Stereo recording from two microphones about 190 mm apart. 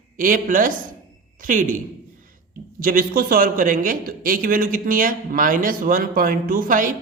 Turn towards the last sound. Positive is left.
turn(degrees=-45)  # may be behind; listen again after turning